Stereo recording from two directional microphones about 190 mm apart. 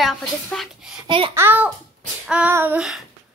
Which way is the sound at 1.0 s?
25° right (ahead or behind).